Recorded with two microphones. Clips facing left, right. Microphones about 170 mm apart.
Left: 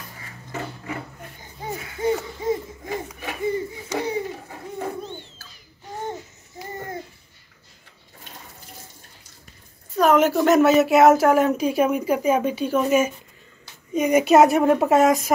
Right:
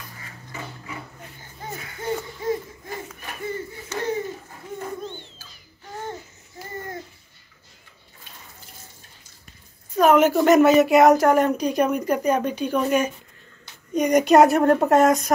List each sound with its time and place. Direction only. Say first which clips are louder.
1.6 s hoot: left 7 dB; 15° left (ahead or behind)
3.5 s battle cry: left 4 dB; 15° left (ahead or behind)
4.5 s a sound: left 3 dB; 65° left (ahead or behind)
9.9 s speech: right 1 dB; centre (ahead or behind)